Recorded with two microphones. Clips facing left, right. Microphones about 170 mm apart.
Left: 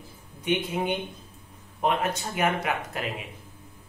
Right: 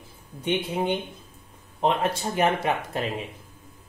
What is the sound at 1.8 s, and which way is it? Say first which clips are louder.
Speech: right 2 dB; 30° right (ahead or behind).